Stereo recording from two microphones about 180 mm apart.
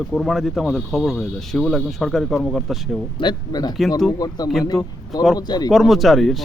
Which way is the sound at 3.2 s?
25° left (ahead or behind).